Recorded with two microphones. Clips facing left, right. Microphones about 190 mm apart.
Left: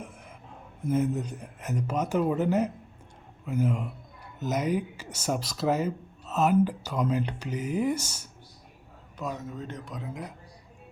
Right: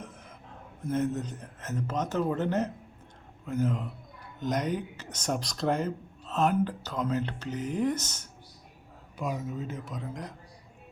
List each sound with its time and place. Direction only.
0.9 s speech: 10° left (ahead or behind)
9.1 s a man's voice: 10° right (ahead or behind)